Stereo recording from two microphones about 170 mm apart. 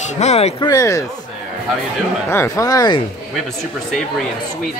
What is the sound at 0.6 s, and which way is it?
Speech, 20° left (ahead or behind).